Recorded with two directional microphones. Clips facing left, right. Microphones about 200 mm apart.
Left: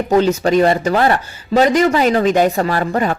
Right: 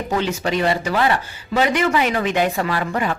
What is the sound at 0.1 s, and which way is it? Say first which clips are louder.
Speech: left 9 dB; 45° left (ahead or behind).